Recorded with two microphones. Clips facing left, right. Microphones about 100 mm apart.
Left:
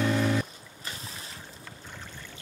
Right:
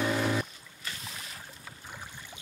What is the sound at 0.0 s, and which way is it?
Music, 5° right (ahead or behind).